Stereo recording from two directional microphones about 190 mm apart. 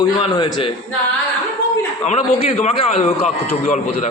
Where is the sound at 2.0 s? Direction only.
40° left (ahead or behind).